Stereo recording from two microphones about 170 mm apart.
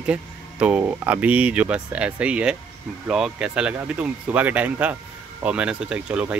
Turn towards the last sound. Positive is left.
turn(degrees=-5)  # may be behind; listen again after turning